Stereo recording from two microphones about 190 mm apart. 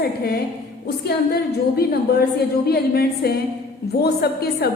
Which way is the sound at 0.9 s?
55° left (ahead or behind).